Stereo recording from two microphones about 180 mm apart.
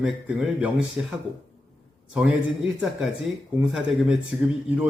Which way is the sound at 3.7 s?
5° right (ahead or behind).